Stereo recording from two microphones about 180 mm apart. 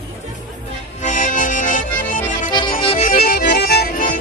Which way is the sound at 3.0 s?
50° left (ahead or behind).